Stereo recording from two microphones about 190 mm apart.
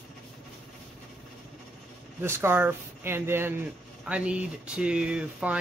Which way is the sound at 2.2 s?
10° right (ahead or behind).